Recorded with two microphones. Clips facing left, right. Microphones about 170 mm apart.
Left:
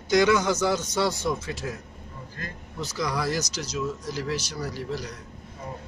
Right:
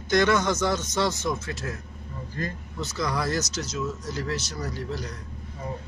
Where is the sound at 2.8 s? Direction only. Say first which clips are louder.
Even; 10° left (ahead or behind).